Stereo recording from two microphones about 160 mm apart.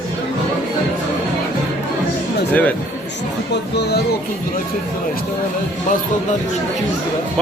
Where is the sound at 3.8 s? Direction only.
90° left.